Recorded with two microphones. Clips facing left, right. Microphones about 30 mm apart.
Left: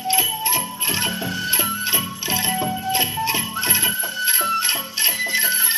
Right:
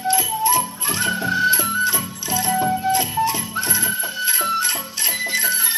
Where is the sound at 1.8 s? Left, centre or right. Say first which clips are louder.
Right 2 dB; left.